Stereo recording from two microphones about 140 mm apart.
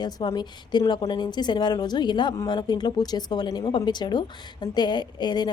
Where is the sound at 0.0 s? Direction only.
30° left (ahead or behind).